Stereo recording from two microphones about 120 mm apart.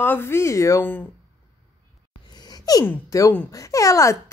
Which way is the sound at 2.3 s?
35° left (ahead or behind).